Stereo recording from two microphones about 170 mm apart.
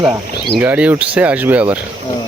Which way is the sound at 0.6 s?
10° right (ahead or behind).